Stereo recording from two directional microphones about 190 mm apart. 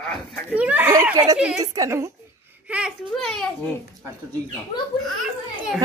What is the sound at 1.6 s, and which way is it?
Speech, 20° right (ahead or behind).